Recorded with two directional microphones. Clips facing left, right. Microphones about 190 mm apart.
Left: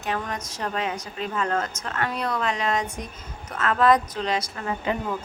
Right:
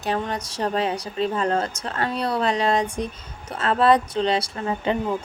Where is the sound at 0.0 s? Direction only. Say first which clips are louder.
Right 4 dB; 30° right (ahead or behind).